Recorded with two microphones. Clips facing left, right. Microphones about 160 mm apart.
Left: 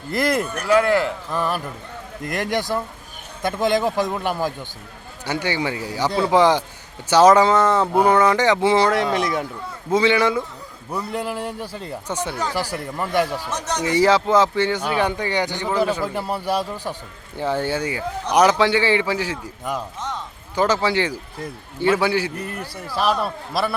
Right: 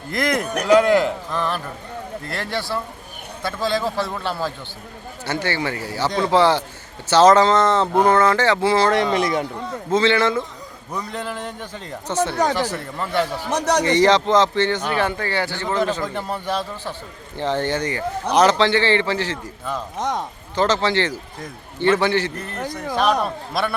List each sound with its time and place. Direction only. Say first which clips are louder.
0.1 s speech: left 1 dB; 5° left (ahead or behind)
0.6 s a man's voice: right 3 dB; 15° right (ahead or behind)
1.3 s a man's voice: left 1 dB; 10° left (ahead or behind)
8.9 s speech: right 1 dB; centre (ahead or behind)
9.9 s a man's voice: even; 10° left (ahead or behind)
12.3 s speech: right 4 dB; 70° right (ahead or behind)
13.8 s a man's voice: left 2 dB; 5° left (ahead or behind)
20.0 s speech: right 6 dB; 75° right (ahead or behind)
20.6 s a man's voice: even; 10° left (ahead or behind)